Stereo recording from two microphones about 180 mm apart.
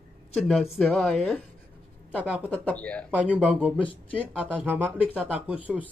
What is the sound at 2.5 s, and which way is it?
Speech, 10° left (ahead or behind).